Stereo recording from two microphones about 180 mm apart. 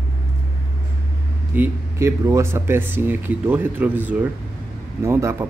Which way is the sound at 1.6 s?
15° right (ahead or behind).